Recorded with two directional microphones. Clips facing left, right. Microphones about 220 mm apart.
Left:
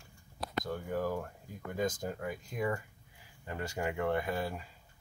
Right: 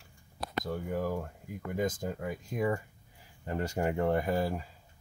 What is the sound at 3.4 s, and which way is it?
Speech, 35° right (ahead or behind).